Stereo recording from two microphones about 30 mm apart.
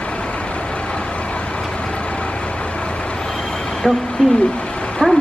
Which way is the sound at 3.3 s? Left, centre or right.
Centre.